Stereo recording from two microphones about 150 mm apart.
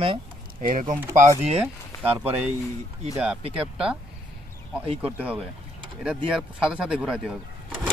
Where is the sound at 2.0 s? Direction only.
10° right (ahead or behind).